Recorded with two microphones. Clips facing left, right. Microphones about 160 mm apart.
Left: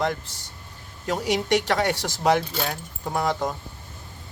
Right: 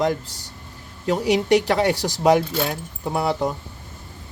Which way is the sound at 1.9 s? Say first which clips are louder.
Right 5 dB; 35° right (ahead or behind).